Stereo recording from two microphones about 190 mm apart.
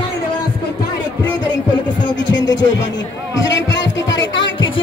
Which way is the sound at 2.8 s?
70° left (ahead or behind).